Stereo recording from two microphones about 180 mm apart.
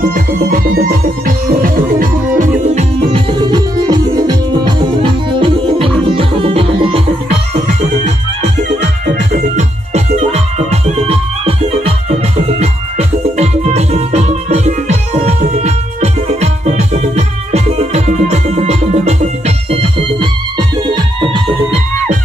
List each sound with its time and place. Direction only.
0.1 s music: 50° right (ahead or behind)
9.6 s music: 40° right (ahead or behind)